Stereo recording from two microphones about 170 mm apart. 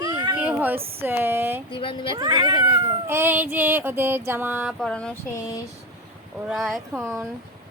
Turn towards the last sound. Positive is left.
turn(degrees=0)  # may be behind; listen again after turning